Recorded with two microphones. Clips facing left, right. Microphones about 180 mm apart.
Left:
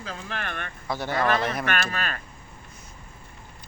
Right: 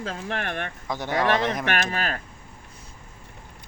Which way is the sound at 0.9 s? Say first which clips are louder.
Right 1 dB; 15° right (ahead or behind).